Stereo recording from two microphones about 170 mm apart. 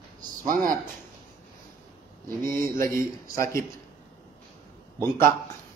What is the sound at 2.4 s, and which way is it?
Speech, 55° right (ahead or behind).